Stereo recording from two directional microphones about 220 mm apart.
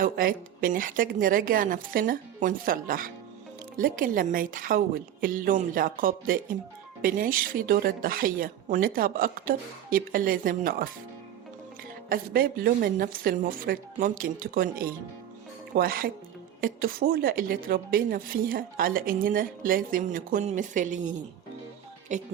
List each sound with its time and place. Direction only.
0.0 s speech: 40° right (ahead or behind)
12.0 s speech: 40° right (ahead or behind)